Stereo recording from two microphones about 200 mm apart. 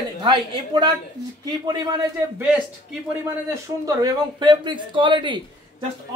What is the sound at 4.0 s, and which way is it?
Speech, 25° right (ahead or behind).